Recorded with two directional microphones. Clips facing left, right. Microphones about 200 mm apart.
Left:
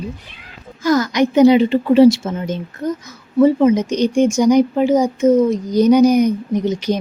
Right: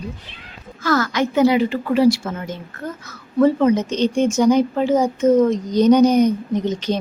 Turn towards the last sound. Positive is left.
turn(degrees=10)  # may be behind; listen again after turning